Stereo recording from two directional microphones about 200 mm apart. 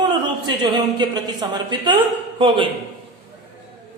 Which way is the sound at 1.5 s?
20° right (ahead or behind).